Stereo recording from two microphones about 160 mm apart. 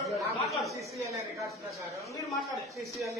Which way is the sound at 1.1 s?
20° right (ahead or behind).